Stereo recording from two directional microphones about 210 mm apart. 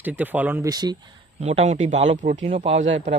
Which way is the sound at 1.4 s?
30° right (ahead or behind).